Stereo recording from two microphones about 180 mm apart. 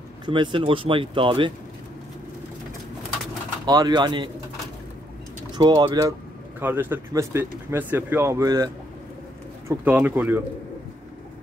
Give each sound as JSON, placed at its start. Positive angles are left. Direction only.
{"t": 0.3, "sound": "speech", "side_deg": -25}
{"t": 3.6, "sound": "speech", "side_deg": -25}
{"t": 5.5, "sound": "speech", "side_deg": -20}
{"t": 9.7, "sound": "speech", "side_deg": -10}